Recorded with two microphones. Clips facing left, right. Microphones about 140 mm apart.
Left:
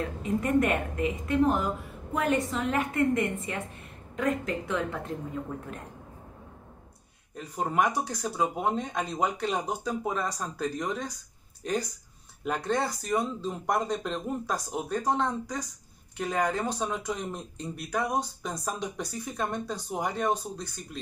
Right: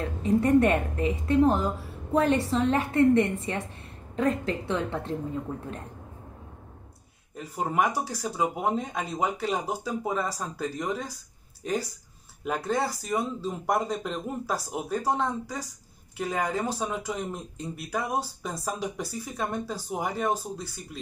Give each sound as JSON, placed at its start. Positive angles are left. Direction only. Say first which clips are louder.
{"t": 0.0, "sound": "a woman's voice", "louder": "right 5 dB", "side_deg": -35}
{"t": 7.3, "sound": "speech", "louder": "right 1 dB", "side_deg": 0}